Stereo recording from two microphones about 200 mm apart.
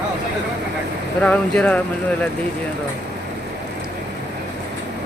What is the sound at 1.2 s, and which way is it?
Speech, 5° left (ahead or behind).